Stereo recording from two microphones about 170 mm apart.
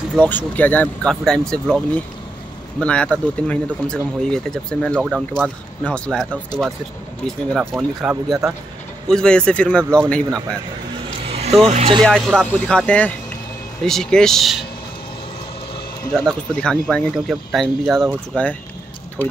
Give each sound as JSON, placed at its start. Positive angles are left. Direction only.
{"t": 0.2, "sound": "speech", "side_deg": 10}
{"t": 2.8, "sound": "speech", "side_deg": 5}
{"t": 7.2, "sound": "speech", "side_deg": 0}
{"t": 11.3, "sound": "music", "side_deg": -40}
{"t": 11.7, "sound": "speech", "side_deg": -35}
{"t": 12.0, "sound": "speech", "side_deg": 5}
{"t": 16.1, "sound": "speech", "side_deg": 5}